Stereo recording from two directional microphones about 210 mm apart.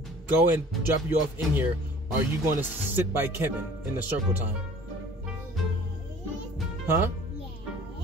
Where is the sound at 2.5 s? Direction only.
10° right (ahead or behind).